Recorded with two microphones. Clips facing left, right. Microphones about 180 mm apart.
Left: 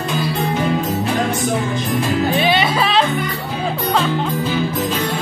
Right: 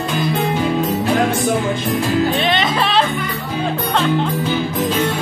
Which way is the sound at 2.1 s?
5° left (ahead or behind).